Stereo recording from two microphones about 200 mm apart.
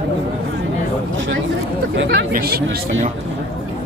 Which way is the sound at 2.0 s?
50° right (ahead or behind).